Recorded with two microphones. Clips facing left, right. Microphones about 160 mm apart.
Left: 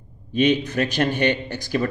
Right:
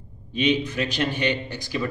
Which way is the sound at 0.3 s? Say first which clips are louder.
Left 3 dB; 50° left (ahead or behind).